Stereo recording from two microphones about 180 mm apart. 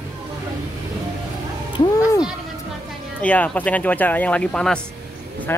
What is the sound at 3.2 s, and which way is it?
Speech, 10° left (ahead or behind).